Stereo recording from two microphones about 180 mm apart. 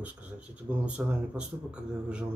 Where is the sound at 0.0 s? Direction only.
5° right (ahead or behind).